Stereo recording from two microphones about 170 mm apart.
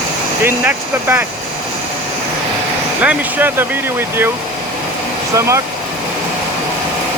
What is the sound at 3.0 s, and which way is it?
Speech, 10° right (ahead or behind).